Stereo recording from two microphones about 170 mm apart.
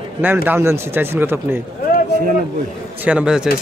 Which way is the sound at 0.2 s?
10° right (ahead or behind).